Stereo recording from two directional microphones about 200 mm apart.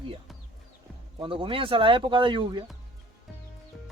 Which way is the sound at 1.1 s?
25° right (ahead or behind).